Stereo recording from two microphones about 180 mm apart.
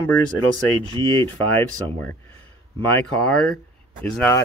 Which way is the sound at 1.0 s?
25° right (ahead or behind).